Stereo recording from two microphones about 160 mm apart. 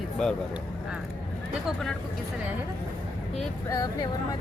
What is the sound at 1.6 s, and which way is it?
Speech, 5° left (ahead or behind).